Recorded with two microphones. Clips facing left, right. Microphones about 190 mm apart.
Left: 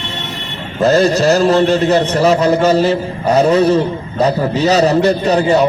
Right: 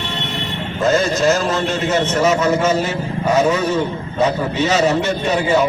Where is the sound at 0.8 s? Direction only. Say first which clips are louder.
Left 5 dB; 35° left (ahead or behind).